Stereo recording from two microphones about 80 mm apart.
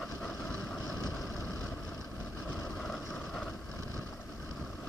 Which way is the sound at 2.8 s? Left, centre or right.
Centre.